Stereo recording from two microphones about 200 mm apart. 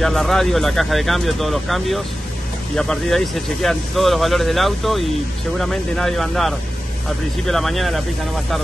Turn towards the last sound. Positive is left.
turn(degrees=0)  # may be behind; listen again after turning